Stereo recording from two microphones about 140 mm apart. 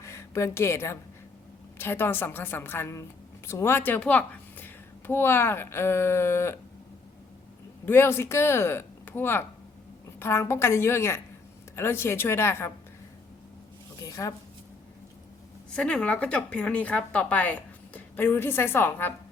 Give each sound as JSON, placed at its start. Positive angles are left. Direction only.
{"t": 0.0, "sound": "a woman's voice", "side_deg": 20}
{"t": 7.9, "sound": "a woman's voice", "side_deg": 15}
{"t": 14.0, "sound": "a woman's voice", "side_deg": 25}
{"t": 15.7, "sound": "a woman's voice", "side_deg": 5}